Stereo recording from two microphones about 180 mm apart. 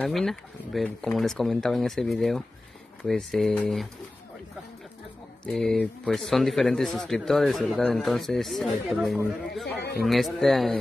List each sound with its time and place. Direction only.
0.0 s speech: centre (ahead or behind)
5.4 s speech: 5° left (ahead or behind)
9.8 s speech: 60° left (ahead or behind)
10.0 s speech: centre (ahead or behind)